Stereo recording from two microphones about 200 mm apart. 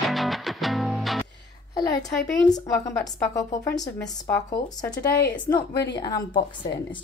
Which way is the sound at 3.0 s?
15° left (ahead or behind).